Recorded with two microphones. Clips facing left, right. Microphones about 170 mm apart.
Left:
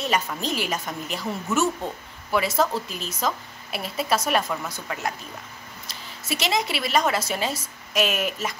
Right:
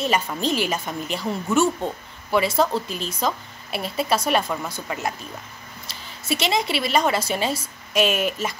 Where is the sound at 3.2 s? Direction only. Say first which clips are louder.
Right 1 dB; centre (ahead or behind).